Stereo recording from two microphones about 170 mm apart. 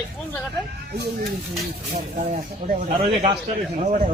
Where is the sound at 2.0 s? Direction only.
50° right (ahead or behind).